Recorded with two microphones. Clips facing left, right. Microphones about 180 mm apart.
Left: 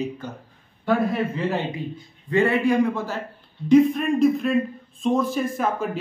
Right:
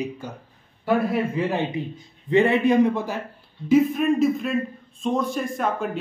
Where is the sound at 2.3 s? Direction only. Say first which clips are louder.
Right 2 dB; 20° right (ahead or behind).